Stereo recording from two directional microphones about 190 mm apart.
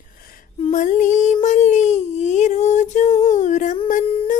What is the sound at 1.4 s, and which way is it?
Humming, 40° left (ahead or behind).